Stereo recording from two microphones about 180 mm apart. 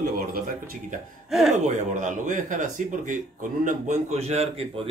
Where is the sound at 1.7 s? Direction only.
45° right (ahead or behind).